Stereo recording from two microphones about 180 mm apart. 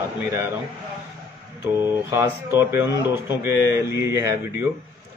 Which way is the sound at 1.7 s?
15° right (ahead or behind).